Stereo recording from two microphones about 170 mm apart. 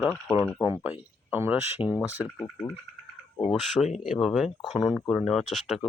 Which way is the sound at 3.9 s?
Centre (ahead or behind).